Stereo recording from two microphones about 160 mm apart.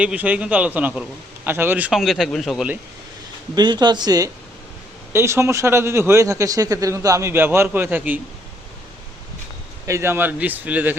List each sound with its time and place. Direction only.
0.0 s a man's voice: 10° right (ahead or behind)
3.5 s a man's voice: 25° right (ahead or behind); by 8.2 s 10° right (ahead or behind)
9.8 s a man's voice: 15° right (ahead or behind)